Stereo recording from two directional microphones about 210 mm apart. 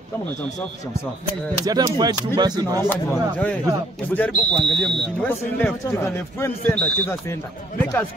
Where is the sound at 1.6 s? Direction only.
20° right (ahead or behind).